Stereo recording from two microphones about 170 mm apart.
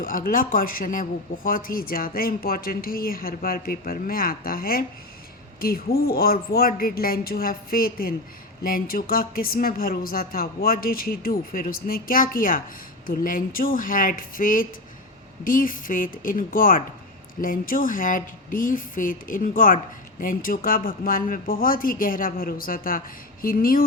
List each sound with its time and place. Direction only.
0.0 s a woman's voice: 55° left (ahead or behind)